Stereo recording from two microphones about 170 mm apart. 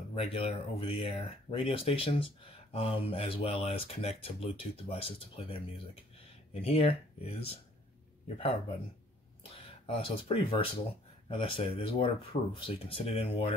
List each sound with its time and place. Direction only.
0.1 s speech: 35° left (ahead or behind)
9.4 s speech: 30° left (ahead or behind)